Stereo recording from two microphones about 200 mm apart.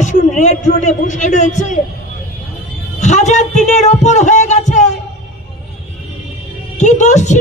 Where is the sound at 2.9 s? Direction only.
35° left (ahead or behind).